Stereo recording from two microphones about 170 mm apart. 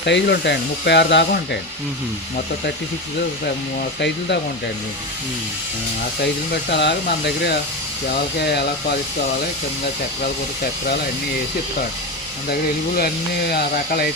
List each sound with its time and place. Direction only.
0.0 s speech: 90° left
6.2 s speech: 80° left
13.5 s speech: 70° left (ahead or behind)